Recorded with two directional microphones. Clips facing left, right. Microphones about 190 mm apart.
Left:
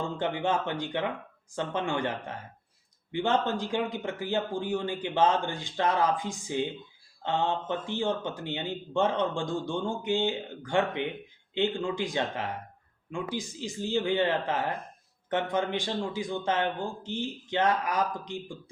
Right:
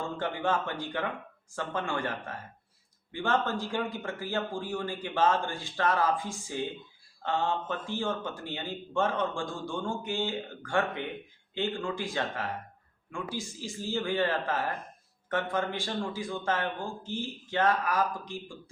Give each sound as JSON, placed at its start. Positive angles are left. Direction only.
{"t": 0.2, "sound": "speech", "side_deg": 20}